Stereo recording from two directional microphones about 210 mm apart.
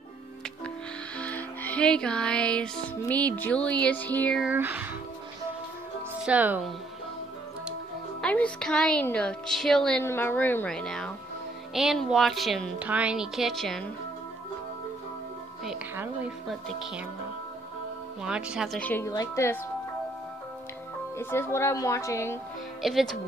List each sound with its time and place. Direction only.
1.1 s music: 5° left (ahead or behind)
4.5 s speech: 10° right (ahead or behind)
6.2 s speech: 5° right (ahead or behind)
8.2 s music: 5° left (ahead or behind)
15.6 s music: centre (ahead or behind)
18.2 s speech: 5° right (ahead or behind); by 19.6 s 15° left (ahead or behind)
21.2 s speech: 10° left (ahead or behind)
22.8 s music: centre (ahead or behind)